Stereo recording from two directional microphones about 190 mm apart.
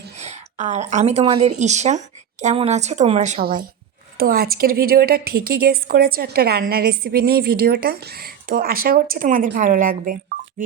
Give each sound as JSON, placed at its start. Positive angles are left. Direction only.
{"t": 0.2, "sound": "a sound", "side_deg": -35}
{"t": 1.2, "sound": "a woman's voice", "side_deg": -30}
{"t": 3.4, "sound": "a woman's voice", "side_deg": -50}